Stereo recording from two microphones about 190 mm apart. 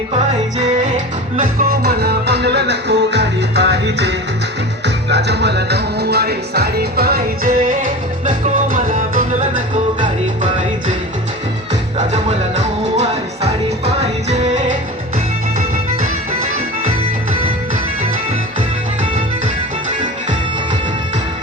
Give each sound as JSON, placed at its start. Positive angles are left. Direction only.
{"t": 1.4, "sound": "music", "side_deg": -50}
{"t": 12.1, "sound": "music", "side_deg": -35}